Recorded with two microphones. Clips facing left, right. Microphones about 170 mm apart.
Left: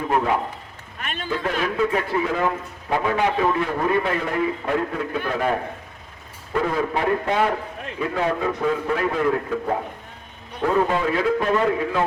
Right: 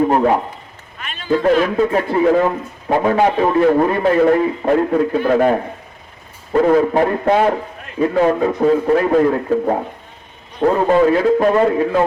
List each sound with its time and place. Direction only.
0.0 s a man's voice: 45° right (ahead or behind)
0.9 s run: 50° left (ahead or behind)
1.3 s a man's voice: 45° right (ahead or behind)
6.7 s a man's voice: 45° right (ahead or behind)